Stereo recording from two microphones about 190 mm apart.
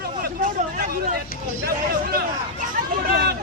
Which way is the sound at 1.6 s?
50° right (ahead or behind).